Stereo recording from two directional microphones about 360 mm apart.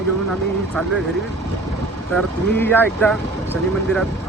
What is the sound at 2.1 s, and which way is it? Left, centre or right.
Speech, centre.